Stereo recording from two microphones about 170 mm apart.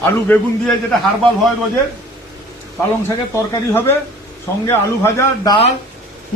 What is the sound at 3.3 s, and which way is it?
A man's voice, 15° left (ahead or behind).